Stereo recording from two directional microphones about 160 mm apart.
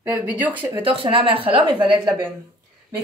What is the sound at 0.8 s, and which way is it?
Speech, 35° right (ahead or behind).